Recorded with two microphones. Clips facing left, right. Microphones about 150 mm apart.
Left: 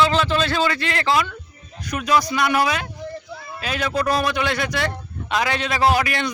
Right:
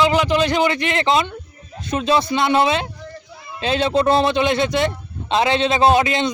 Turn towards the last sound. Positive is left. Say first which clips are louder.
# right 4 dB
turn(degrees=-20)  # may be behind; listen again after turning